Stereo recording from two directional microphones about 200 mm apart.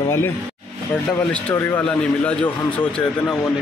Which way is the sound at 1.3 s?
10° left (ahead or behind).